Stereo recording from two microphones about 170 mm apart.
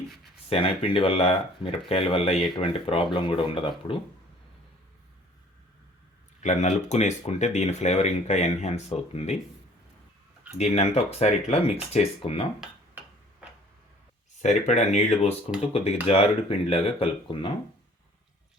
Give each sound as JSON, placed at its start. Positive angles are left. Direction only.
{"t": 0.5, "sound": "speech", "side_deg": 35}
{"t": 6.4, "sound": "speech", "side_deg": 45}
{"t": 10.6, "sound": "speech", "side_deg": 35}
{"t": 14.4, "sound": "speech", "side_deg": 45}